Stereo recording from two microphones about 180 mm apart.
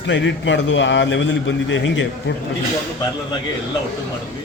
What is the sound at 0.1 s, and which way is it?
A man's voice, 90° left.